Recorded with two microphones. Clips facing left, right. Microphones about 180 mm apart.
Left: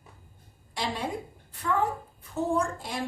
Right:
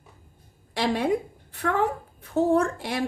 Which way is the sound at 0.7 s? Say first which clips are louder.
Right 8 dB; 70° right (ahead or behind).